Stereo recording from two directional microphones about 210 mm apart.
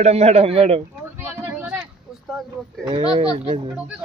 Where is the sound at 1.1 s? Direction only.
10° right (ahead or behind).